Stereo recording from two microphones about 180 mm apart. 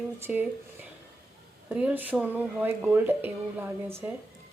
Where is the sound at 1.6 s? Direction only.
10° right (ahead or behind).